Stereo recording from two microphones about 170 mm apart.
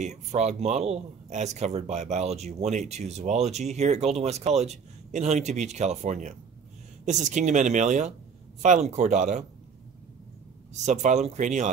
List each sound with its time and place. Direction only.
0.0 s speech: 40° right (ahead or behind)
10.7 s speech: 45° right (ahead or behind)